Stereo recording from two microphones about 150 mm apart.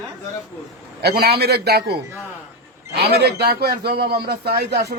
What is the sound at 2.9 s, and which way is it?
A man's voice, 90° right.